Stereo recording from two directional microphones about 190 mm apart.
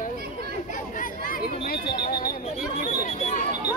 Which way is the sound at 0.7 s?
45° left (ahead or behind).